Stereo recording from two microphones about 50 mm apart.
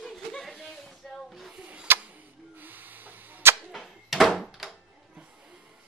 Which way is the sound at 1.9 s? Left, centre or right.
Right.